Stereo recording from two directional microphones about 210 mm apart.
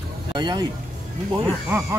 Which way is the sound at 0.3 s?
20° right (ahead or behind).